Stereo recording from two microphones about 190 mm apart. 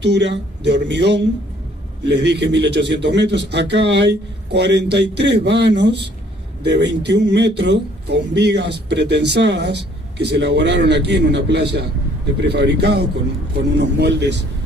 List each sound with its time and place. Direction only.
0.0 s speech: 65° right (ahead or behind)